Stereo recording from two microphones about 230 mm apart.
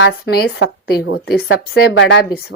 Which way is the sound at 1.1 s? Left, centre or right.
Left.